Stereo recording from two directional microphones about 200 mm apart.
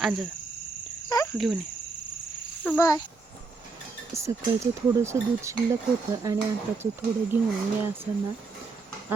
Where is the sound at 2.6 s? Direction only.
10° left (ahead or behind).